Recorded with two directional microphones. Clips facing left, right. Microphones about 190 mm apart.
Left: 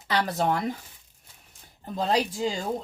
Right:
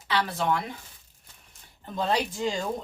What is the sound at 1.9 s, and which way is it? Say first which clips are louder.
Speech: left 1 dB; 35° left (ahead or behind).